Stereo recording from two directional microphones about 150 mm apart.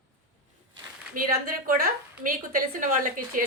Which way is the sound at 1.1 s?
70° right (ahead or behind).